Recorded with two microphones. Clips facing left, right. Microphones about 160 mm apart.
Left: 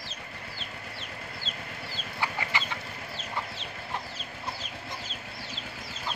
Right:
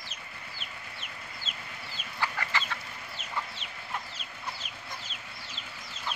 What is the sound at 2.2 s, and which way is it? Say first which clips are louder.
Chicken: left 1 dB; 15° left (ahead or behind).